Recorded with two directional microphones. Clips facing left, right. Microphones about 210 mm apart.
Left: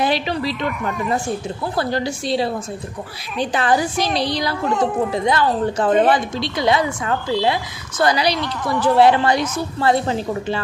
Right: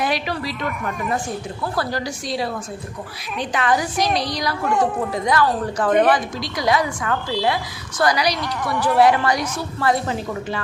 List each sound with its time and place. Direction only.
0.0 s a woman's voice: 25° left (ahead or behind)